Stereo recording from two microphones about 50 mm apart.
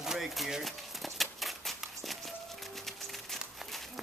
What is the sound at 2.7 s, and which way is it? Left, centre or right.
Music, centre.